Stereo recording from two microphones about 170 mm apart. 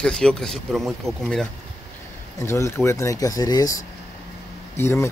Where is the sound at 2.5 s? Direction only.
15° left (ahead or behind).